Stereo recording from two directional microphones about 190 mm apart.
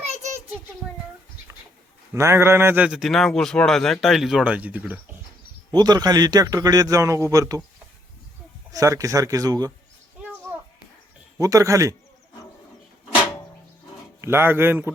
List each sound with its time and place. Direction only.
2.1 s a man's voice: 15° right (ahead or behind)
5.7 s a man's voice: 20° right (ahead or behind)
8.7 s speech: 15° right (ahead or behind)
11.3 s speech: 15° right (ahead or behind)
14.2 s speech: 10° right (ahead or behind)